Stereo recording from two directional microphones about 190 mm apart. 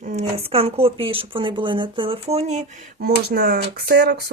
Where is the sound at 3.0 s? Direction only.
55° right (ahead or behind).